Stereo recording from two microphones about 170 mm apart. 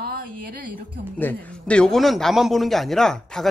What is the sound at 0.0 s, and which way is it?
Music, 60° right (ahead or behind).